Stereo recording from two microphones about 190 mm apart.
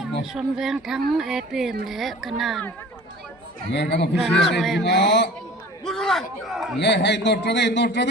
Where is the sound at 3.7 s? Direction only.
65° left (ahead or behind).